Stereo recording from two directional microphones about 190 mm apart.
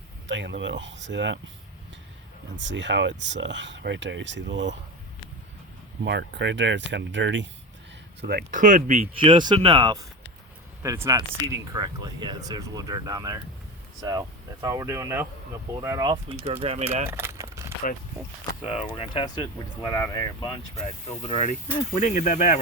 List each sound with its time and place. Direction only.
0.3 s speech: 70° right (ahead or behind)
2.6 s speech: 70° right (ahead or behind)
6.1 s speech: 65° right (ahead or behind)
8.2 s speech: 55° right (ahead or behind); by 9.0 s 40° right (ahead or behind)
9.1 s speech: 25° right (ahead or behind)
17.1 s a sound: 15° right (ahead or behind)
17.8 s speech: 45° left (ahead or behind)
18.6 s speech: 30° left (ahead or behind)
21.2 s speech: 30° left (ahead or behind)